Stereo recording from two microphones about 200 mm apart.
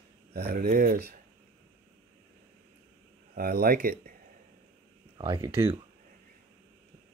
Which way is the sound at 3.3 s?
45° right (ahead or behind).